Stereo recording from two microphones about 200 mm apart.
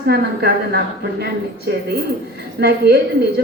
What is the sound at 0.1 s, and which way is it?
Speech, 55° right (ahead or behind).